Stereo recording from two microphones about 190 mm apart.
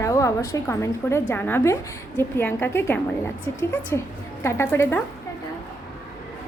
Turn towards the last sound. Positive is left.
turn(degrees=15)  # may be behind; listen again after turning